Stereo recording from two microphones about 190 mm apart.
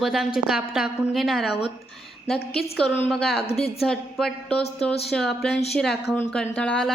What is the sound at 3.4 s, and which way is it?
Speech, 30° left (ahead or behind).